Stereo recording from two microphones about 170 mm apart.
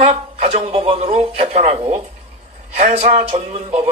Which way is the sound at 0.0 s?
40° right (ahead or behind).